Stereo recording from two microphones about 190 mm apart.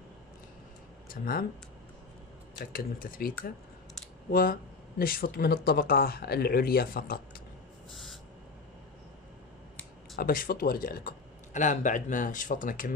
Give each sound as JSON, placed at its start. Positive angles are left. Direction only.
{"t": 1.0, "sound": "speech", "side_deg": 50}
{"t": 2.6, "sound": "speech", "side_deg": 50}
{"t": 7.9, "sound": "owl", "side_deg": 0}
{"t": 10.1, "sound": "speech", "side_deg": 50}